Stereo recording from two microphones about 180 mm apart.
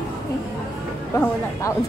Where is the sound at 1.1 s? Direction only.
15° left (ahead or behind).